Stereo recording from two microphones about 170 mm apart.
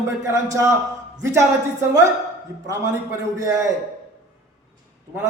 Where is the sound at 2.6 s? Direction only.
15° right (ahead or behind).